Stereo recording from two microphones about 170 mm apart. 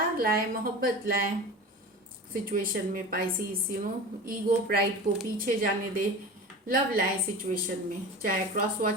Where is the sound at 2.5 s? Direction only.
55° right (ahead or behind).